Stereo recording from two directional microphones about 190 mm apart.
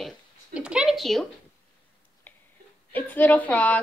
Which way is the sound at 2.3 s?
10° left (ahead or behind).